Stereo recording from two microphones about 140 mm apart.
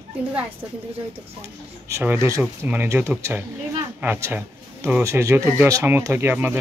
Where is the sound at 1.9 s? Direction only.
20° right (ahead or behind).